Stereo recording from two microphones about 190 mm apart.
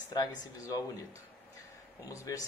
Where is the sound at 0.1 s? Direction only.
20° left (ahead or behind).